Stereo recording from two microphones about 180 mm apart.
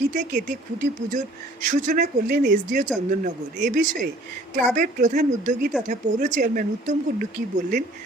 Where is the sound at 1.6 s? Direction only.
45° right (ahead or behind).